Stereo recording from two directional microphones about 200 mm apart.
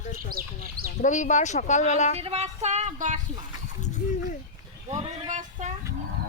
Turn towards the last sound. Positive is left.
turn(degrees=-40)  # may be behind; listen again after turning